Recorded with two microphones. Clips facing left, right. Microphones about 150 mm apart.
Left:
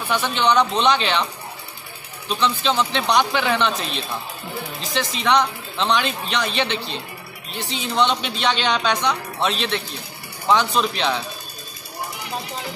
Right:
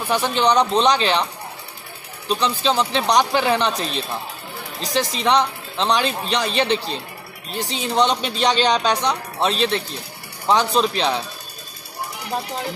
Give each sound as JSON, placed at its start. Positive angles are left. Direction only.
{"t": 0.1, "sound": "speech", "side_deg": -35}
{"t": 2.2, "sound": "speech", "side_deg": -35}